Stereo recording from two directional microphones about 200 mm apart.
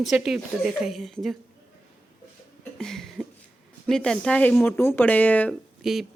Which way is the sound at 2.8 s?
Centre (ahead or behind).